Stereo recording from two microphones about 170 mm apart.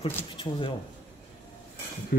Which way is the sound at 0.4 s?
30° left (ahead or behind).